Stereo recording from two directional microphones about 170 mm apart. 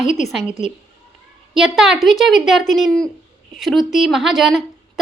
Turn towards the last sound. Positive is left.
turn(degrees=0)  # may be behind; listen again after turning